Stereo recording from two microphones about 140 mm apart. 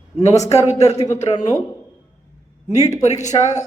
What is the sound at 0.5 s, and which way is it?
Speech, 50° left (ahead or behind).